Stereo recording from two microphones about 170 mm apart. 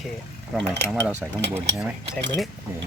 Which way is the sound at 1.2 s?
5° right (ahead or behind).